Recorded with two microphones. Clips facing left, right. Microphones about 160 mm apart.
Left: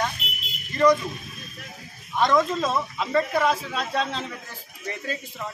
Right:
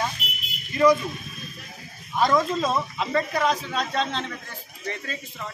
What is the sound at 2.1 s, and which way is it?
A man's voice, centre (ahead or behind).